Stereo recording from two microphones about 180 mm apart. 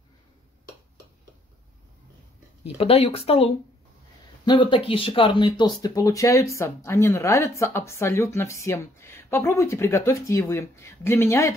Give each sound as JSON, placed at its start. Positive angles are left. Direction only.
{"t": 2.8, "sound": "speech", "side_deg": 35}